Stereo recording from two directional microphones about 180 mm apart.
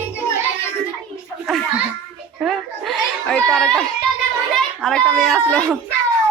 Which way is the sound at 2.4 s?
Centre (ahead or behind).